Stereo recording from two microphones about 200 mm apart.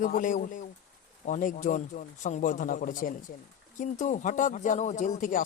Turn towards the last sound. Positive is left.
turn(degrees=40)  # may be behind; listen again after turning